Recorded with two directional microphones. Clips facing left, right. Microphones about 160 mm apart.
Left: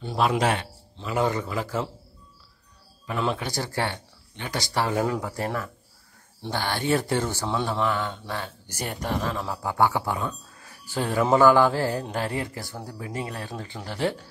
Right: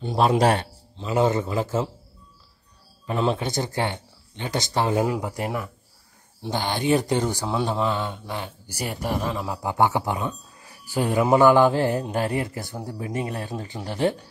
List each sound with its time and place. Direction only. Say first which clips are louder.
0.2 s a man's voice: right 4 dB; 35° right (ahead or behind)
1.0 s speech: right 4 dB; 25° right (ahead or behind)
3.1 s speech: right 4 dB; 25° right (ahead or behind)